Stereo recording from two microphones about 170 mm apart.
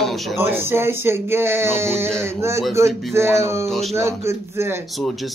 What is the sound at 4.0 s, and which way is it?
Speech, 15° right (ahead or behind).